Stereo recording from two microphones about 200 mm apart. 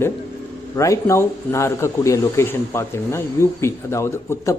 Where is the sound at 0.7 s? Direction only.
15° left (ahead or behind).